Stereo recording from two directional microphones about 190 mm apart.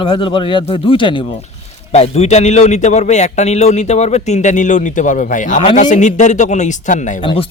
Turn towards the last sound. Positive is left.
turn(degrees=30)  # may be behind; listen again after turning